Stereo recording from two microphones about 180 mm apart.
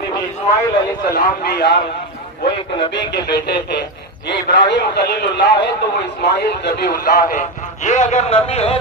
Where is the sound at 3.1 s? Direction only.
65° left (ahead or behind).